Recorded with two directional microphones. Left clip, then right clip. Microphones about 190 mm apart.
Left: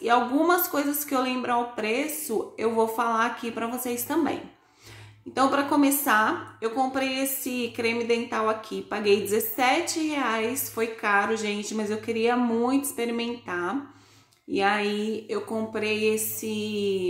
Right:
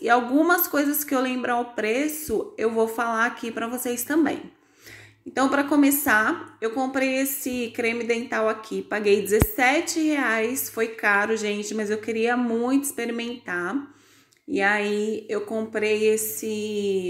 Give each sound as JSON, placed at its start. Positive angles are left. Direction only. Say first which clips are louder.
{"t": 0.0, "sound": "a woman's voice", "louder": "right 2 dB", "side_deg": -20}